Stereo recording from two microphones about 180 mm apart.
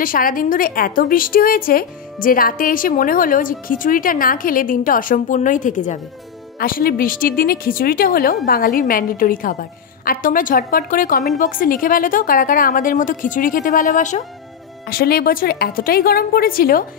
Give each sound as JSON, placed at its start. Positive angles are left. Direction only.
{"t": 0.0, "sound": "a woman's voice", "side_deg": 50}
{"t": 14.9, "sound": "a woman's voice", "side_deg": 55}